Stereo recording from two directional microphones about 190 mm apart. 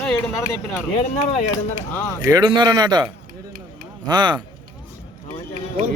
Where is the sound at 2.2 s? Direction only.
20° right (ahead or behind).